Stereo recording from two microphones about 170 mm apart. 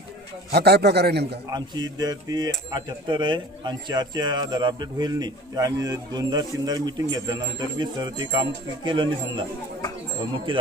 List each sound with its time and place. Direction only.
0.5 s a man's voice: 70° right (ahead or behind)
1.5 s speech: 25° right (ahead or behind)
10.5 s speech: 30° right (ahead or behind)